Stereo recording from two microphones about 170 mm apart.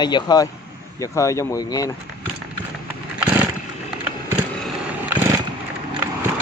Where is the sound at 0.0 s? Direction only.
25° left (ahead or behind).